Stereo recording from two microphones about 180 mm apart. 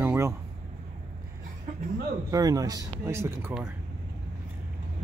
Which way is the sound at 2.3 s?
20° right (ahead or behind).